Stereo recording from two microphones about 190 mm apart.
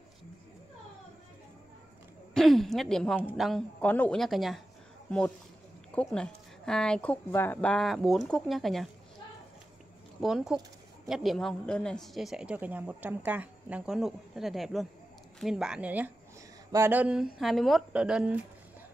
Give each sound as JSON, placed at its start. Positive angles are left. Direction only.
{"t": 2.3, "sound": "a woman's voice", "side_deg": 0}
{"t": 5.9, "sound": "a woman's voice", "side_deg": 5}
{"t": 10.2, "sound": "a woman's voice", "side_deg": -5}